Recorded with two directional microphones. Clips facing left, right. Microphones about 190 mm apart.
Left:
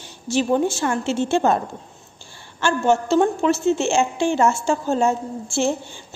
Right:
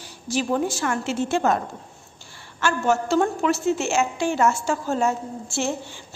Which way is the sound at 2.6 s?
25° left (ahead or behind).